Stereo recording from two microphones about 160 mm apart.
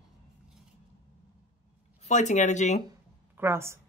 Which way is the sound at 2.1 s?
50° left (ahead or behind).